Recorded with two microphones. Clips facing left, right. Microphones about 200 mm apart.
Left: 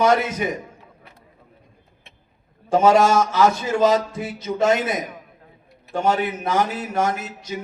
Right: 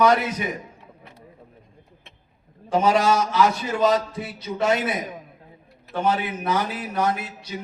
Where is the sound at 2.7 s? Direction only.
45° left (ahead or behind).